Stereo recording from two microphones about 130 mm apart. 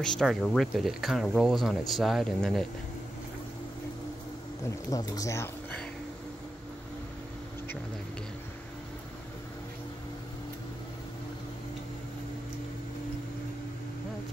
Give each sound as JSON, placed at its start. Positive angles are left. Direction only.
{"t": 0.0, "sound": "speech", "side_deg": 5}
{"t": 4.6, "sound": "speech", "side_deg": 25}